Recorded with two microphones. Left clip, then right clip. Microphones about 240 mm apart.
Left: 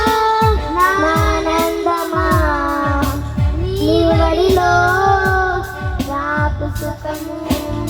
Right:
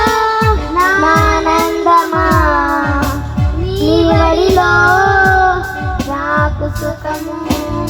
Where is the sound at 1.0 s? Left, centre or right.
Right.